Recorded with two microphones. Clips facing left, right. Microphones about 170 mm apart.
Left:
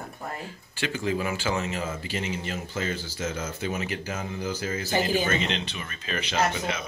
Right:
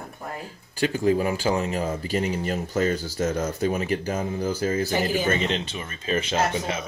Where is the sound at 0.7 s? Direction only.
40° right (ahead or behind).